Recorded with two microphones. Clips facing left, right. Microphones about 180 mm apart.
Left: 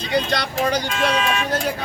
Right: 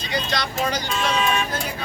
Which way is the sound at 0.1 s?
60° left (ahead or behind).